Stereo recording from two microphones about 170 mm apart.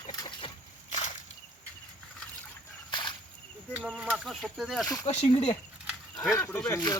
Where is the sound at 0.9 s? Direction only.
45° left (ahead or behind).